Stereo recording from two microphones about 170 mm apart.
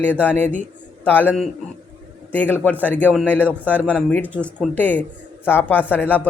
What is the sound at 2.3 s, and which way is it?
A man's voice, 10° left (ahead or behind).